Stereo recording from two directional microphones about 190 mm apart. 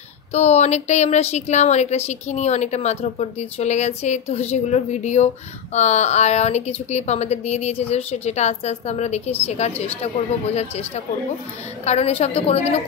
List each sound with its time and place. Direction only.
0.3 s a woman's voice: 35° left (ahead or behind)